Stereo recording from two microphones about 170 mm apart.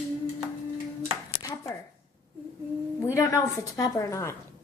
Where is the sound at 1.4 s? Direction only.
20° left (ahead or behind).